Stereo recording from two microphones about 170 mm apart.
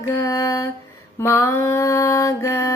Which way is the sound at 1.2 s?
15° left (ahead or behind).